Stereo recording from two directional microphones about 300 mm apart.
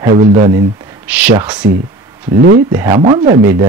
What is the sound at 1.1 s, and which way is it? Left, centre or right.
Speech, centre.